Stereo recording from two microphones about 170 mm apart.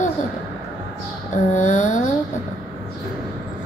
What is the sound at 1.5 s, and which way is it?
Speech, 45° left (ahead or behind).